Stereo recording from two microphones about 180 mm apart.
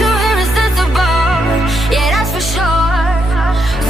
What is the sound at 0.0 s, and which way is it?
Music, centre (ahead or behind).